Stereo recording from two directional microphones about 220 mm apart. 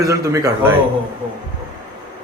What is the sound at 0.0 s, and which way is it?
Speech, 15° right (ahead or behind).